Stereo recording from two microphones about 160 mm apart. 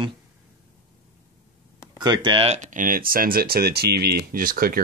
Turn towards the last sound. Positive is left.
turn(degrees=-60)  # may be behind; listen again after turning